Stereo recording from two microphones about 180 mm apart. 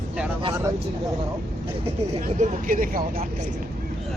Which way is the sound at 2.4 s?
50° right (ahead or behind).